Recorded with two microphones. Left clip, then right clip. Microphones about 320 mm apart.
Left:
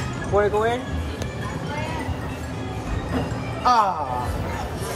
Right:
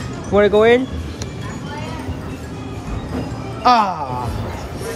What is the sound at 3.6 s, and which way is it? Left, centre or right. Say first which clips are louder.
Speech: right 4 dB; right.